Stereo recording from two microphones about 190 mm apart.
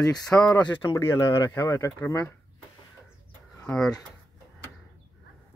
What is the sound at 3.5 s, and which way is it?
Speech, 5° left (ahead or behind).